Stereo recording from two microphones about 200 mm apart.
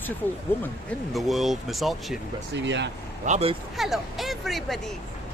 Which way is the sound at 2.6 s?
65° right (ahead or behind).